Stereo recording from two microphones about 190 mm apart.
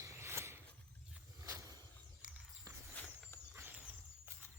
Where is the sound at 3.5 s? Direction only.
10° right (ahead or behind).